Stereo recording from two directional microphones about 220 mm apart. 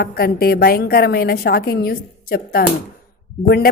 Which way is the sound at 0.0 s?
45° left (ahead or behind).